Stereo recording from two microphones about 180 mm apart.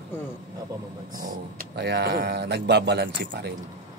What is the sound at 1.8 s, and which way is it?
Speech, 65° right (ahead or behind).